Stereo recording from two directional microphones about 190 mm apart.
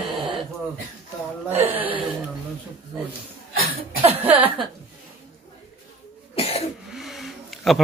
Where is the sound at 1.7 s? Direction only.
10° right (ahead or behind).